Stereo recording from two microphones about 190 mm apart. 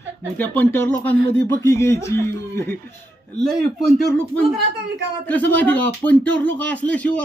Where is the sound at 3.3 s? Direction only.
Centre (ahead or behind).